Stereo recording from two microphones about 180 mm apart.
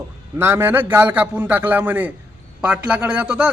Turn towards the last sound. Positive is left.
turn(degrees=-5)  # may be behind; listen again after turning